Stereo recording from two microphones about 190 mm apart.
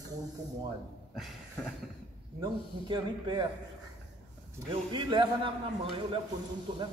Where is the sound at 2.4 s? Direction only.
25° right (ahead or behind).